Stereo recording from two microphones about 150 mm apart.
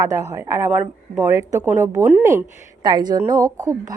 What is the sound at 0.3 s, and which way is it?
Speech, 20° right (ahead or behind).